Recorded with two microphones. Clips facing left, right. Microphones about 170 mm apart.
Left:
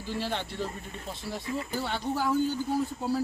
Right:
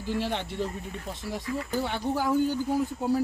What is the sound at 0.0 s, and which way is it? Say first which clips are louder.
Speech: right 3 dB; 15° right (ahead or behind).